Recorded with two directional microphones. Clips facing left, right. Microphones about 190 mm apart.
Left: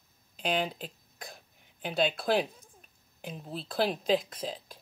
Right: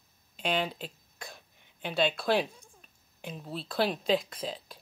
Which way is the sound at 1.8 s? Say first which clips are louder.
Even; centre (ahead or behind).